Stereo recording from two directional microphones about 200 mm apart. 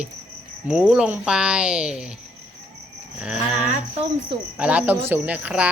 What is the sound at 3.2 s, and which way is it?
Speech, 5° right (ahead or behind).